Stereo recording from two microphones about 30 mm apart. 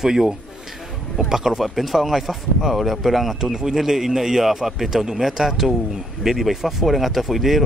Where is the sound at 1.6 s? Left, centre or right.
Centre.